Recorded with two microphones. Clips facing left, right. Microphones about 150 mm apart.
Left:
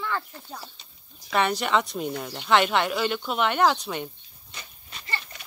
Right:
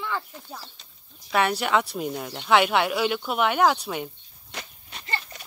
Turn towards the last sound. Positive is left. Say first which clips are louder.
# right 2 dB
turn(degrees=-60)  # may be behind; listen again after turning